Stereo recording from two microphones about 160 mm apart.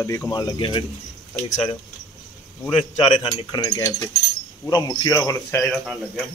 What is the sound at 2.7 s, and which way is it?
Speech, 30° left (ahead or behind).